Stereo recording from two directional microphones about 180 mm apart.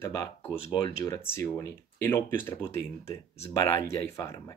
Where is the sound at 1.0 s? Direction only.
15° left (ahead or behind).